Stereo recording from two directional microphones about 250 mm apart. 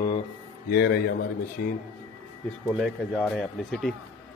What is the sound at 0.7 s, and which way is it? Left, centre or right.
Speech, left.